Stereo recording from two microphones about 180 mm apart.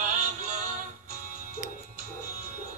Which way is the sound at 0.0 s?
45° right (ahead or behind).